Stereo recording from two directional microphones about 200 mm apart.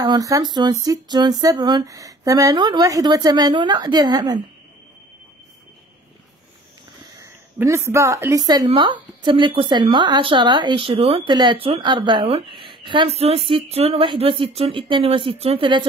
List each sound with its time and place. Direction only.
0.0 s speech: 20° right (ahead or behind)
7.5 s speech: 15° right (ahead or behind)